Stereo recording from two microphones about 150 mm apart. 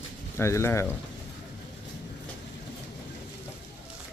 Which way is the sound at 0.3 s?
15° left (ahead or behind).